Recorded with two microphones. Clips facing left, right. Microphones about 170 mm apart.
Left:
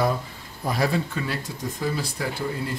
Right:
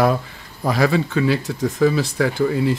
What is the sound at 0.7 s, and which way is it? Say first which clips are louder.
Speech: right 6 dB; 90° right.